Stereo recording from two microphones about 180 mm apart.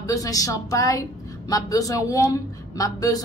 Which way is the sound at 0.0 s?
20° left (ahead or behind).